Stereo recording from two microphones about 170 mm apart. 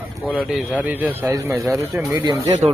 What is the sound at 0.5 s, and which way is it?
Speech, 10° right (ahead or behind).